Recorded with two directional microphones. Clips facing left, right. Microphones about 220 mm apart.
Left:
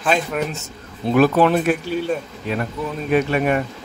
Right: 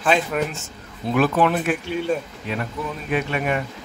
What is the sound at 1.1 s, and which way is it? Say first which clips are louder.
Speech: left 4 dB; 40° left (ahead or behind).